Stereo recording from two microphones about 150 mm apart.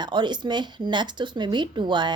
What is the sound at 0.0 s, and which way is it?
A woman's voice, 30° right (ahead or behind).